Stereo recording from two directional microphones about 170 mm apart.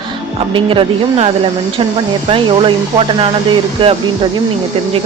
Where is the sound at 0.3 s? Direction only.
30° right (ahead or behind).